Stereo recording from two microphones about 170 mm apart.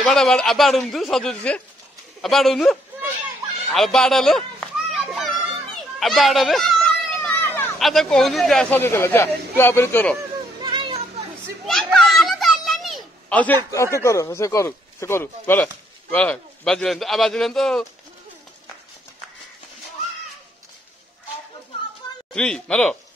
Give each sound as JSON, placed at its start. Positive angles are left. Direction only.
{"t": 0.0, "sound": "a man's voice", "side_deg": 5}
{"t": 3.6, "sound": "children playing", "side_deg": 0}
{"t": 7.8, "sound": "speech", "side_deg": 0}
{"t": 10.6, "sound": "children playing", "side_deg": -30}
{"t": 11.9, "sound": "children playing", "side_deg": 0}
{"t": 13.7, "sound": "a man's voice", "side_deg": 15}
{"t": 22.3, "sound": "a man's voice", "side_deg": 5}